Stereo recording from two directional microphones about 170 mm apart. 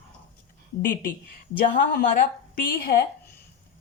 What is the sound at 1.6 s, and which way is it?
A woman's voice, 55° left (ahead or behind).